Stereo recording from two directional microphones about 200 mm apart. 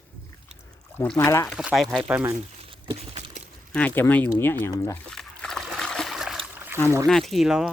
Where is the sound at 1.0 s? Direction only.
10° left (ahead or behind).